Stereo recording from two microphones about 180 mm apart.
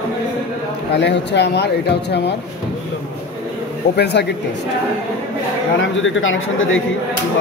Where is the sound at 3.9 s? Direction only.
70° left (ahead or behind).